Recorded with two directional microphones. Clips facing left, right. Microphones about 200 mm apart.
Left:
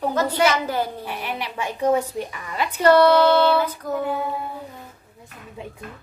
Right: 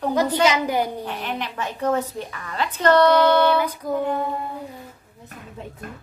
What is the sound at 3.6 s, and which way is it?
Speech, 15° right (ahead or behind).